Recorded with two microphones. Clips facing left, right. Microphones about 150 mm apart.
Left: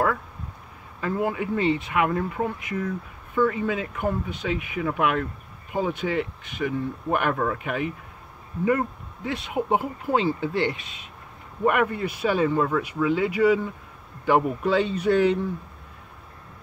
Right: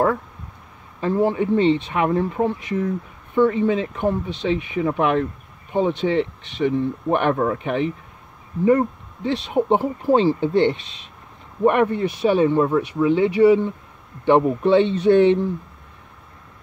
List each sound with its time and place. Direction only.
1.0 s speech: 30° right (ahead or behind)